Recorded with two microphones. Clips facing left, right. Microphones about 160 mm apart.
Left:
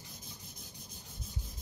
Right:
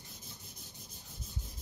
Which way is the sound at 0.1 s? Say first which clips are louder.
Left 1 dB; centre (ahead or behind).